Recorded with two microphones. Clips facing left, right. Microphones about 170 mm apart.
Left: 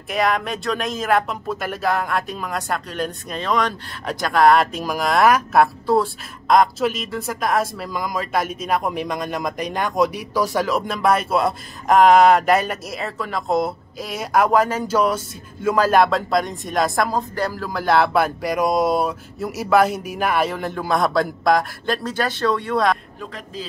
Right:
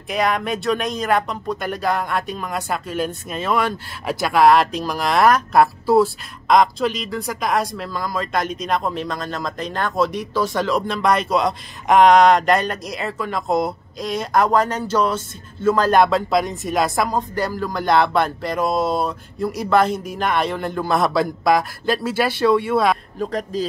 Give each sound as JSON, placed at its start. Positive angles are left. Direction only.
{"t": 0.1, "sound": "speech", "side_deg": 0}
{"t": 23.1, "sound": "a man's voice", "side_deg": -40}